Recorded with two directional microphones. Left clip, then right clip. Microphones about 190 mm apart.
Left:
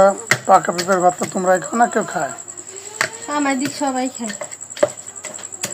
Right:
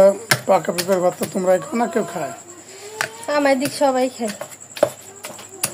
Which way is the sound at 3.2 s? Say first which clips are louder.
Right 7 dB; 50° right (ahead or behind).